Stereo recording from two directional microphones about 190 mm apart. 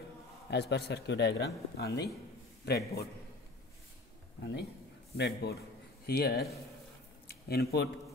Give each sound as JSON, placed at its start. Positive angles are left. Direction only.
{"t": 0.5, "sound": "speech", "side_deg": 65}
{"t": 5.1, "sound": "speech", "side_deg": 60}